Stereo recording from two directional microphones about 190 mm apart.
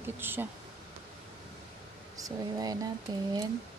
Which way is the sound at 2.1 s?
20° right (ahead or behind).